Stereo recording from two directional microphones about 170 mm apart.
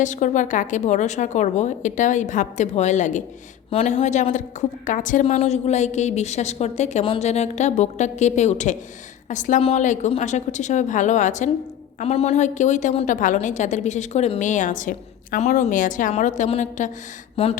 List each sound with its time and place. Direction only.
0.0 s a woman's voice: 45° left (ahead or behind)
3.7 s a woman's voice: 35° left (ahead or behind)